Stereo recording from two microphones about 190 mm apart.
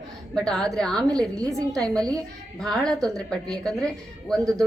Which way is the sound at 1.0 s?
20° right (ahead or behind).